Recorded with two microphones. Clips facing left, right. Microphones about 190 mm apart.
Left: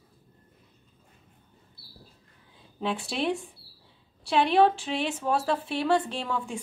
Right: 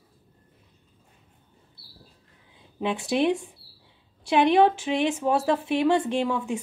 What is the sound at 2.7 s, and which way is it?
Speech, 15° right (ahead or behind).